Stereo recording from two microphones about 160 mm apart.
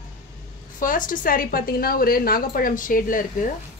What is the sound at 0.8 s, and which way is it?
A woman's voice, 55° left (ahead or behind).